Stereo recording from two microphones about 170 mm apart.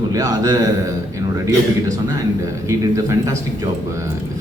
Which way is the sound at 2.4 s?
20° right (ahead or behind).